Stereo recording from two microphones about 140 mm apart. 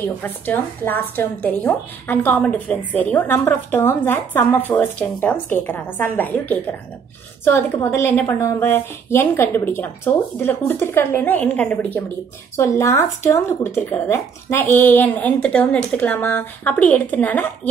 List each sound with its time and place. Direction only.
0.2 s speech: 15° left (ahead or behind)